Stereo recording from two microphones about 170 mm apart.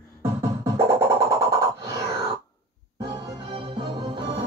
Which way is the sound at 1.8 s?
20° right (ahead or behind).